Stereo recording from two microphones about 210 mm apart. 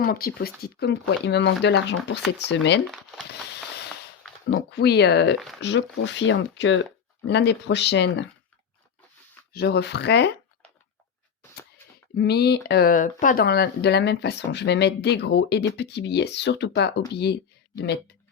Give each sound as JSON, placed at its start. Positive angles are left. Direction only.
{"t": 0.0, "sound": "speech", "side_deg": 45}
{"t": 4.7, "sound": "speech", "side_deg": 55}
{"t": 9.5, "sound": "speech", "side_deg": 50}
{"t": 12.1, "sound": "speech", "side_deg": 50}